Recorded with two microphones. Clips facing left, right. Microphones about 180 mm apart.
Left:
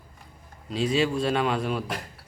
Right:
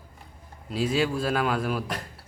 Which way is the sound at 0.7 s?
5° right (ahead or behind).